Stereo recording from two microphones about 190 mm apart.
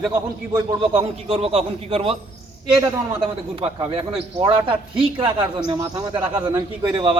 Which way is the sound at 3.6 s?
30° right (ahead or behind).